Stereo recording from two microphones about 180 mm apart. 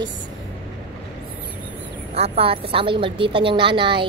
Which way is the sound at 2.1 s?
35° right (ahead or behind).